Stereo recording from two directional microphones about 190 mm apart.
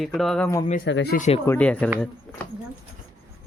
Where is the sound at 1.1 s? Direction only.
40° left (ahead or behind).